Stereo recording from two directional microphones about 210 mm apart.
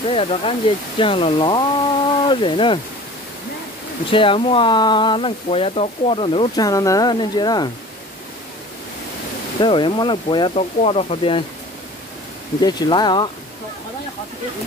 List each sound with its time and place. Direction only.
0.1 s speech: 25° left (ahead or behind)
4.1 s speech: 25° left (ahead or behind)
9.6 s speech: 25° left (ahead or behind)
12.5 s speech: 20° left (ahead or behind)